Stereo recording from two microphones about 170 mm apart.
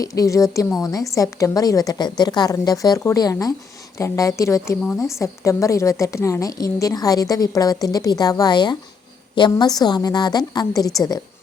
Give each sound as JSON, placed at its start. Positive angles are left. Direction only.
{"t": 0.0, "sound": "a woman's voice", "side_deg": 20}